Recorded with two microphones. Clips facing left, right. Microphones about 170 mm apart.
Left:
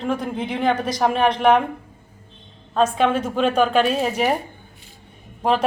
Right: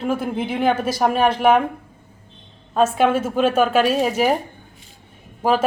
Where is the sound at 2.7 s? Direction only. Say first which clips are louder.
Right 2 dB; 5° right (ahead or behind).